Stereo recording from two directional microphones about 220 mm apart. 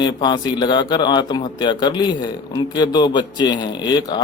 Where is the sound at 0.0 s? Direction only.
20° left (ahead or behind).